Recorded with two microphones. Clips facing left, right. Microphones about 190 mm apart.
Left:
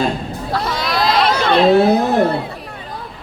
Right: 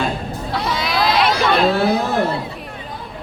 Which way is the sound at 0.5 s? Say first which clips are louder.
Left 1 dB; centre (ahead or behind).